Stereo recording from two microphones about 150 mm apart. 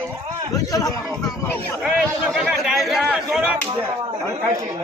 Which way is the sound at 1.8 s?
5° right (ahead or behind).